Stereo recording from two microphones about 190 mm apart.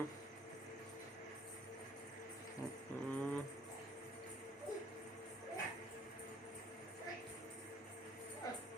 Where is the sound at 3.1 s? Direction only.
5° left (ahead or behind).